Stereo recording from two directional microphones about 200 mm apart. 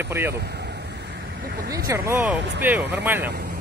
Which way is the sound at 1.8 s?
15° right (ahead or behind).